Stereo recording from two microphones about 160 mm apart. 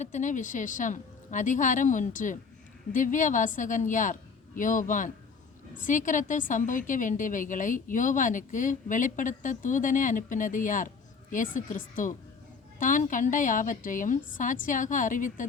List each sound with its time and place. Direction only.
0.0 s a woman's voice: 50° left (ahead or behind)